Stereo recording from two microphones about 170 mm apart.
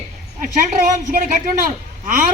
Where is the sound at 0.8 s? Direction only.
50° right (ahead or behind).